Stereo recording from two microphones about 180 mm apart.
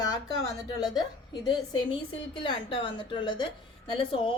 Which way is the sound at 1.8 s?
30° left (ahead or behind).